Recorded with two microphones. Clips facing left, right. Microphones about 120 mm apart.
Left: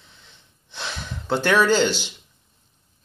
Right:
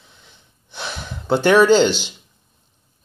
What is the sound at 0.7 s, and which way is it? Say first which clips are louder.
Speech: right 2 dB; 10° right (ahead or behind).